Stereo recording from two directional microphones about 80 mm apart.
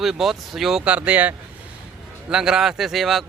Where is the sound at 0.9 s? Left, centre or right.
Centre.